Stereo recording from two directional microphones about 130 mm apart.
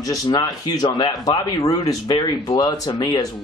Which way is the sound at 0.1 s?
30° left (ahead or behind).